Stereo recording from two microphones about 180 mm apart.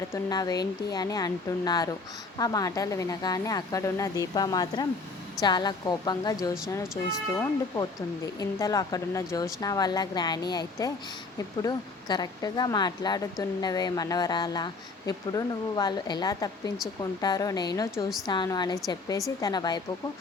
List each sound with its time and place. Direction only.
0.1 s speech: 20° left (ahead or behind)